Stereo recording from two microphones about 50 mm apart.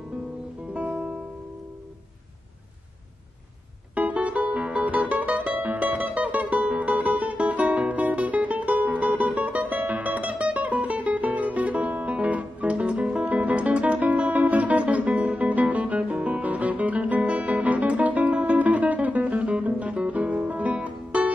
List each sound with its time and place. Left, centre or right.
0.9 s music: centre
3.9 s music: right